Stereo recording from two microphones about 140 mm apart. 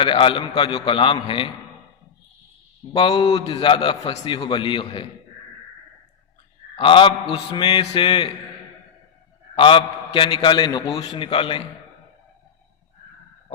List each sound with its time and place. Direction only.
0.0 s a man's voice: 35° left (ahead or behind)
2.9 s a man's voice: 40° left (ahead or behind)
6.7 s a man's voice: 35° left (ahead or behind)
9.6 s a man's voice: 40° left (ahead or behind)